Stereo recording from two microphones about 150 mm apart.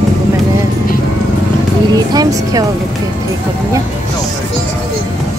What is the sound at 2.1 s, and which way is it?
Speech, 25° right (ahead or behind).